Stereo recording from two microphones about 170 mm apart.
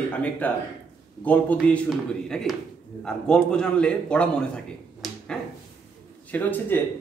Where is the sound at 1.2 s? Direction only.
10° left (ahead or behind).